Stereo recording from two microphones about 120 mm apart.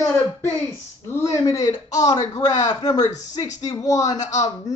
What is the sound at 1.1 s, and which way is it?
Speech, 25° left (ahead or behind).